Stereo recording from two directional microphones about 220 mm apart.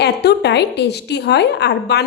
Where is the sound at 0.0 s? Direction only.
50° left (ahead or behind).